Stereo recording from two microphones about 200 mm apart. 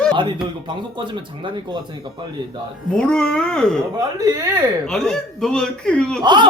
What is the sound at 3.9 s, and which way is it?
Speech, 20° right (ahead or behind).